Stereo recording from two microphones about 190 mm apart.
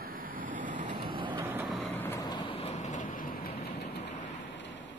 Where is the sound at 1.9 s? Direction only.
10° left (ahead or behind); by 3.5 s 45° left (ahead or behind).